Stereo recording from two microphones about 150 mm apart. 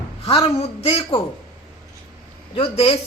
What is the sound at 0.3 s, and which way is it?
Speech, 40° left (ahead or behind).